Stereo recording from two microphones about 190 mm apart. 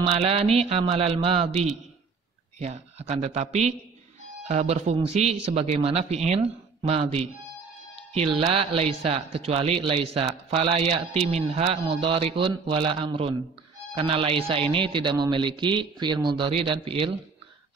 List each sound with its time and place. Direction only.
0.1 s speech: 30° right (ahead or behind)